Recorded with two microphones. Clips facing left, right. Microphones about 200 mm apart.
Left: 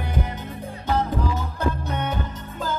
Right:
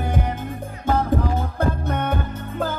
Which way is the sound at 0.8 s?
50° right (ahead or behind).